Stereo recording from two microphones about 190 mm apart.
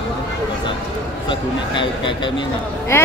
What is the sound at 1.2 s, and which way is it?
Speech, 25° left (ahead or behind).